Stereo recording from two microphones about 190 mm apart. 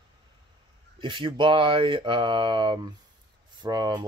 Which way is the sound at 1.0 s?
25° right (ahead or behind).